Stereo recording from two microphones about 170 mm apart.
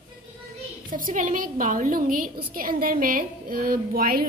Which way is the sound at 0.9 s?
50° right (ahead or behind).